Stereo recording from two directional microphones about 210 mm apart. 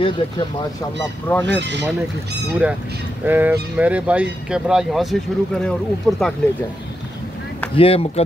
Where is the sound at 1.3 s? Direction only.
10° left (ahead or behind).